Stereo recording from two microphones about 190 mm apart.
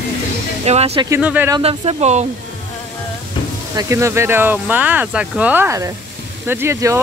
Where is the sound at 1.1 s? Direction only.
10° right (ahead or behind).